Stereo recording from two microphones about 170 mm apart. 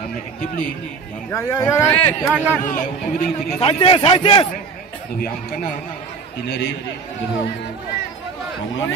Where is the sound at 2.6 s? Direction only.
50° left (ahead or behind).